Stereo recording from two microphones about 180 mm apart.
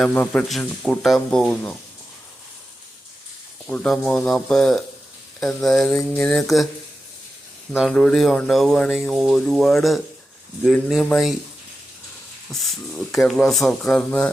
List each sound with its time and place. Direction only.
0.0 s speech: 5° left (ahead or behind)
3.7 s speech: 5° left (ahead or behind)
7.7 s speech: centre (ahead or behind)
13.1 s speech: centre (ahead or behind)